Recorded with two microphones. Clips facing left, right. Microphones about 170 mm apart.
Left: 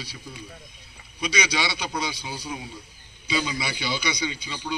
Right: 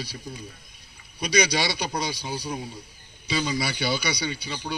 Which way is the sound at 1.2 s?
40° right (ahead or behind).